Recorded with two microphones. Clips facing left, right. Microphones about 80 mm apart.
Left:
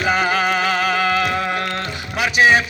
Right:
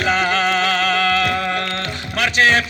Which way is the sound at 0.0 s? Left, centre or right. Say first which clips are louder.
Even; centre.